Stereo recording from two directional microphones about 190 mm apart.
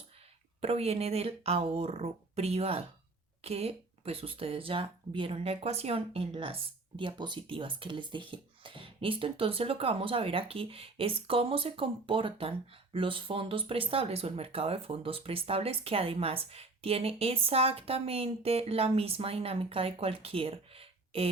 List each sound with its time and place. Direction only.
0.6 s speech: 30° right (ahead or behind)